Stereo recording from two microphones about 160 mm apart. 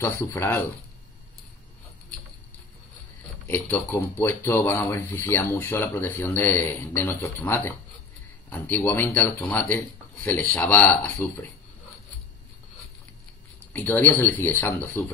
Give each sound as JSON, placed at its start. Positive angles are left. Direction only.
{"t": 0.0, "sound": "speech", "side_deg": 20}
{"t": 3.4, "sound": "speech", "side_deg": 10}
{"t": 13.7, "sound": "speech", "side_deg": 10}